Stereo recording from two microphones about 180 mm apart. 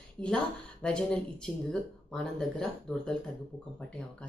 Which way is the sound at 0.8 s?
5° left (ahead or behind).